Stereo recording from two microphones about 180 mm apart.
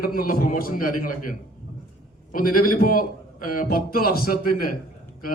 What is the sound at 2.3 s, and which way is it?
A man's voice, 50° left (ahead or behind).